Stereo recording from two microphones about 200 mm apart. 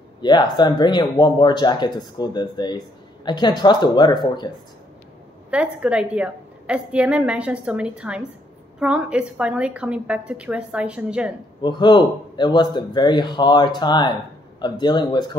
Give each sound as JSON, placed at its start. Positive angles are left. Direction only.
{"t": 0.2, "sound": "speech", "side_deg": 20}
{"t": 5.5, "sound": "a woman's voice", "side_deg": -5}
{"t": 11.6, "sound": "speech", "side_deg": 20}